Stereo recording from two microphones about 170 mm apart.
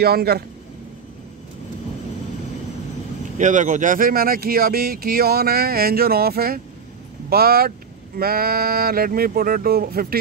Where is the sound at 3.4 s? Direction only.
45° right (ahead or behind).